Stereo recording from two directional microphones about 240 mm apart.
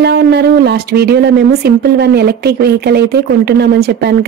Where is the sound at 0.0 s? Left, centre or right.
Right.